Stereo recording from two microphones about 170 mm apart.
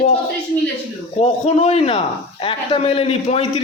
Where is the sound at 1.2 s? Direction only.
40° left (ahead or behind).